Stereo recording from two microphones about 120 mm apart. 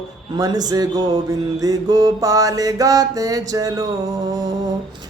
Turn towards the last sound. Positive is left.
turn(degrees=-30)  # may be behind; listen again after turning